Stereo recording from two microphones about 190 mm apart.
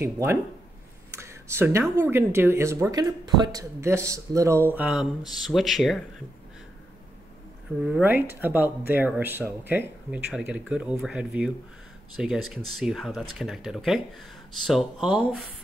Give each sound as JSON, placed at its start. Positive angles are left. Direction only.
{"t": 0.0, "sound": "speech", "side_deg": -15}
{"t": 7.8, "sound": "speech", "side_deg": -5}